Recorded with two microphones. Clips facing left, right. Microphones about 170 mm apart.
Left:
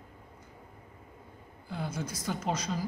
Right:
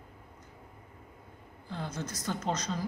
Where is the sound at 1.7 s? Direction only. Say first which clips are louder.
Left 1 dB; 10° left (ahead or behind).